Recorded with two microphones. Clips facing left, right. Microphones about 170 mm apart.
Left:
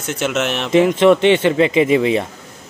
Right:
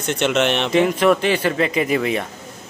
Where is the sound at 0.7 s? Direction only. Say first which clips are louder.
Left 7 dB; 25° left (ahead or behind).